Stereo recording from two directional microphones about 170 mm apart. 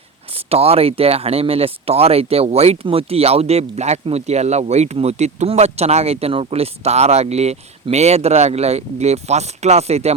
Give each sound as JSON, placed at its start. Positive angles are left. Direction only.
{"t": 0.5, "sound": "speech", "side_deg": -35}